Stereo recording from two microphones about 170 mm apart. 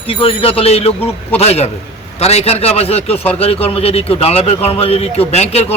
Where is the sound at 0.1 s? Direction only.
35° left (ahead or behind).